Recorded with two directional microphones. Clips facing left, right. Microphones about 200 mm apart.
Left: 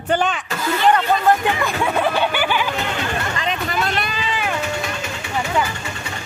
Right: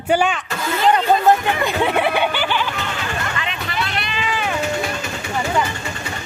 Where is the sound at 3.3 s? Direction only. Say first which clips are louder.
Left 3 dB; 40° left (ahead or behind).